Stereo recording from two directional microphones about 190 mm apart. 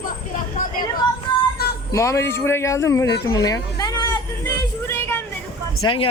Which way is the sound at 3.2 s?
20° left (ahead or behind).